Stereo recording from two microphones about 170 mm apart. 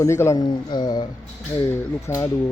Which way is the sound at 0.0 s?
15° left (ahead or behind).